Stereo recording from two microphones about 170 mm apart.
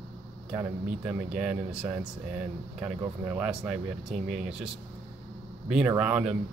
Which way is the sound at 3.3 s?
10° right (ahead or behind).